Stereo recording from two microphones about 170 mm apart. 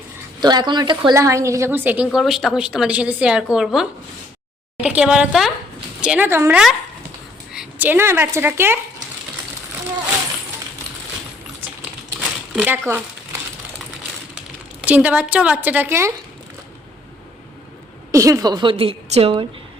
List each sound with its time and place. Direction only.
0.3 s a woman's voice: 25° right (ahead or behind)
11.6 s typing: 10° right (ahead or behind)
12.5 s speech: 10° right (ahead or behind)
14.8 s a woman's voice: 10° right (ahead or behind)
18.1 s a woman's voice: 20° right (ahead or behind)